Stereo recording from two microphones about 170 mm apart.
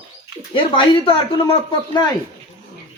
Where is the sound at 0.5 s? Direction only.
30° left (ahead or behind).